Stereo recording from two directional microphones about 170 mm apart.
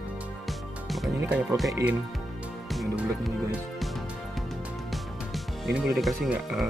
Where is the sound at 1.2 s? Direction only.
15° right (ahead or behind).